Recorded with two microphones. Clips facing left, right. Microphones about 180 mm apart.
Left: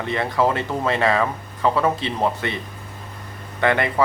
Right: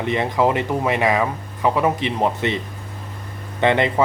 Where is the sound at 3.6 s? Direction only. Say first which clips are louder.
Right 2 dB; 20° right (ahead or behind).